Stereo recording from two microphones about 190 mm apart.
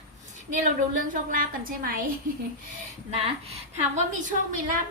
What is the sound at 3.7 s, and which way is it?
A woman's voice, 40° right (ahead or behind).